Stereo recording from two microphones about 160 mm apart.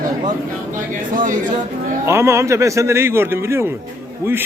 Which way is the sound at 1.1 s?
55° right (ahead or behind).